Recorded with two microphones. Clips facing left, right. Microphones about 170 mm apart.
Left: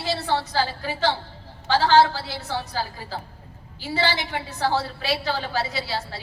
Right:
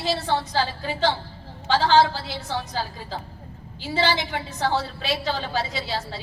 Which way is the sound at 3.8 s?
20° right (ahead or behind).